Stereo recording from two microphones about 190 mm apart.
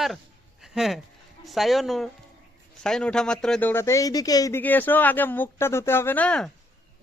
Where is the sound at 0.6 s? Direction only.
Centre (ahead or behind).